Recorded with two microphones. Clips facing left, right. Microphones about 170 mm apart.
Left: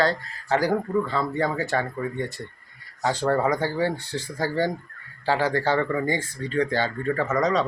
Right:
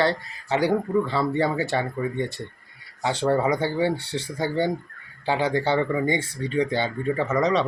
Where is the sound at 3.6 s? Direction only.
25° right (ahead or behind).